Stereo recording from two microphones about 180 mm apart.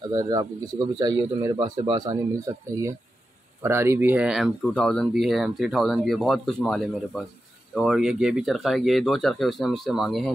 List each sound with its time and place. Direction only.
0.1 s speech: 20° right (ahead or behind); by 10.3 s centre (ahead or behind)